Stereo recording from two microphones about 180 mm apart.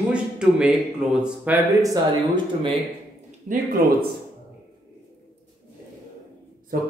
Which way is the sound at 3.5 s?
40° right (ahead or behind).